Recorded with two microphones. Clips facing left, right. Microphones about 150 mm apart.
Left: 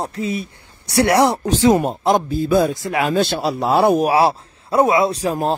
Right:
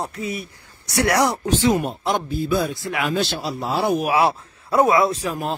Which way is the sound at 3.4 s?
65° left (ahead or behind).